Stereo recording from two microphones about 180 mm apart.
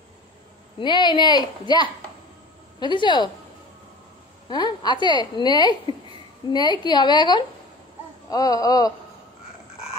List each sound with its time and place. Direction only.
0.7 s a woman's voice: 25° left (ahead or behind)
4.5 s a woman's voice: 25° left (ahead or behind)